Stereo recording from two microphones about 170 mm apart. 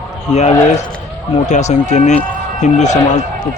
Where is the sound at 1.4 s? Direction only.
45° left (ahead or behind).